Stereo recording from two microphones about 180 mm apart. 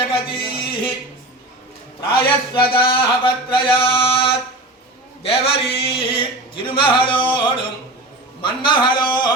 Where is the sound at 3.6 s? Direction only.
30° left (ahead or behind).